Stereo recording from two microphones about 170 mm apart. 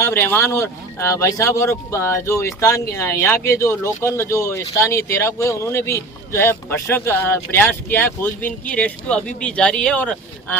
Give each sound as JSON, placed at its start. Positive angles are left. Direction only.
{"t": 0.0, "sound": "speech", "side_deg": 15}